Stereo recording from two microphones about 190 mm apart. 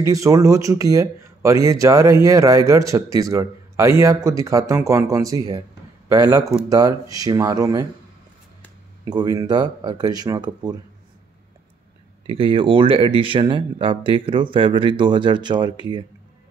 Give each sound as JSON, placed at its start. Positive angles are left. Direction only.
{"t": 0.0, "sound": "speech", "side_deg": -15}
{"t": 9.0, "sound": "speech", "side_deg": -20}
{"t": 12.3, "sound": "speech", "side_deg": -30}